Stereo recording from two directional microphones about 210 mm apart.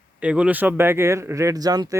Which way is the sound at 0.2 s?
5° right (ahead or behind).